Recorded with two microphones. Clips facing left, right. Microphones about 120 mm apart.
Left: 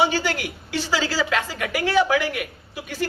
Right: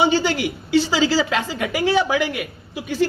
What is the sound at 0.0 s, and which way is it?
Speech, 25° right (ahead or behind).